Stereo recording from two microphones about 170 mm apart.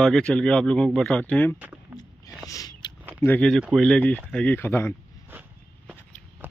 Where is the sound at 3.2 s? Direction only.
10° left (ahead or behind).